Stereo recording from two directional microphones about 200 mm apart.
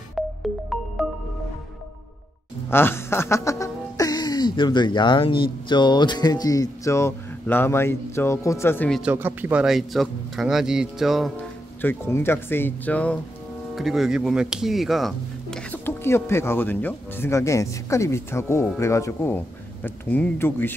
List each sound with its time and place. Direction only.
0.2 s music: centre (ahead or behind)
2.7 s speech: 10° left (ahead or behind)
9.0 s speech: 10° right (ahead or behind)
11.8 s speech: 10° left (ahead or behind)